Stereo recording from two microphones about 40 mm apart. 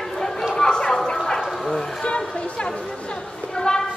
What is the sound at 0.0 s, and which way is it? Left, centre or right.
Chatter, centre.